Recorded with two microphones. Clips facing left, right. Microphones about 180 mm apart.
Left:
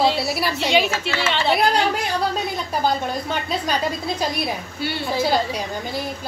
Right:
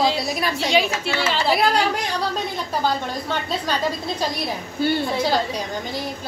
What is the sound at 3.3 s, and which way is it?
Speech, 10° left (ahead or behind).